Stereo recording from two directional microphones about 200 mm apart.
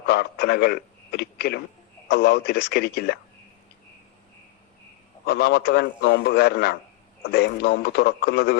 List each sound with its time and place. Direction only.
0.1 s a man's voice: 55° left (ahead or behind)
5.2 s a man's voice: 55° left (ahead or behind)